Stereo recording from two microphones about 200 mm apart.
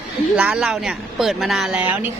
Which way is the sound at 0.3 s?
5° right (ahead or behind).